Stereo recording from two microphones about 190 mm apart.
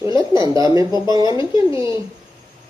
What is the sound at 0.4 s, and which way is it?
A woman's voice, 20° right (ahead or behind).